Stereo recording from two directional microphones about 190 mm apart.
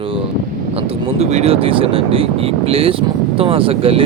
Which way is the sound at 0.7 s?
35° right (ahead or behind).